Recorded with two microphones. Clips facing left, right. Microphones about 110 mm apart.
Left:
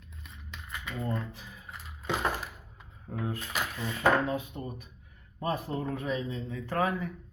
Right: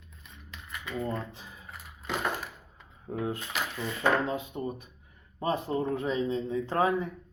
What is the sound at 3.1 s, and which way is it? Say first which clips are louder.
Speech: right 2 dB; 20° right (ahead or behind).